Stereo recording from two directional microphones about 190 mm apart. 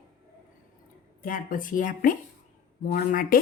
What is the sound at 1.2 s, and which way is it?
Speech, 45° left (ahead or behind).